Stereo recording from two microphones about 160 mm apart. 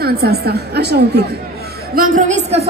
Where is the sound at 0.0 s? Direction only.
75° right (ahead or behind).